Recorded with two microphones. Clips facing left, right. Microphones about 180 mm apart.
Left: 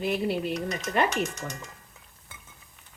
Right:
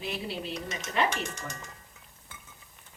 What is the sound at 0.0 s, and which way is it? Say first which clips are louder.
Speech: left 8 dB; 55° left (ahead or behind).